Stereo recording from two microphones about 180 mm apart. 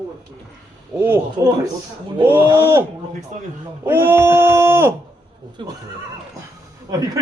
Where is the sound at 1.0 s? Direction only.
15° right (ahead or behind).